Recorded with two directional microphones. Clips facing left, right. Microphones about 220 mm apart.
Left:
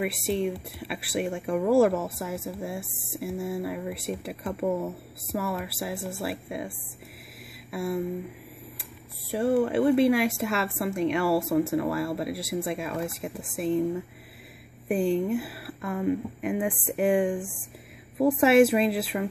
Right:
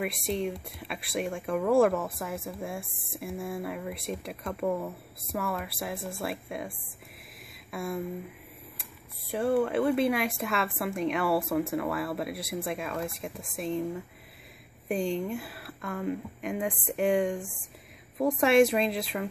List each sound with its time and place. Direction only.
0.0 s speech: centre (ahead or behind)
7.7 s speech: 5° left (ahead or behind)
9.3 s speech: centre (ahead or behind)
14.9 s speech: 5° left (ahead or behind)